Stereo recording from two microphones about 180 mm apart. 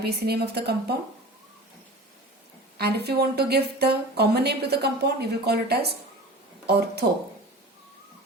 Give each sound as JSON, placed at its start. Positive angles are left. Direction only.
{"t": 0.0, "sound": "speech", "side_deg": -60}
{"t": 2.7, "sound": "speech", "side_deg": -65}